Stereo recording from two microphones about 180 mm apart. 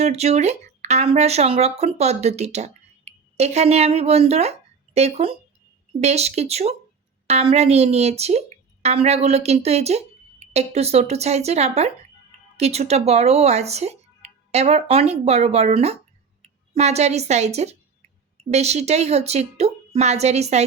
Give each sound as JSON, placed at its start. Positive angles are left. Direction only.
{"t": 0.0, "sound": "speech", "side_deg": -35}